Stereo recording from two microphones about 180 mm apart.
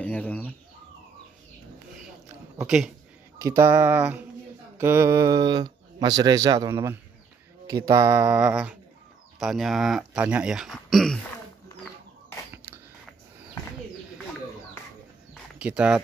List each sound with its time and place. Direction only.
0.0 s chicken: 10° left (ahead or behind)
2.6 s speech: 5° right (ahead or behind)
3.3 s speech: 15° right (ahead or behind); by 11.1 s centre (ahead or behind)
15.6 s speech: 5° right (ahead or behind)